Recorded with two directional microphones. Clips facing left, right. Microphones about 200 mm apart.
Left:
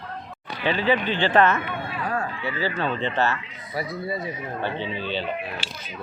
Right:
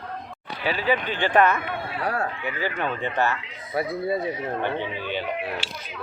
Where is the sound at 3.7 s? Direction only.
55° right (ahead or behind).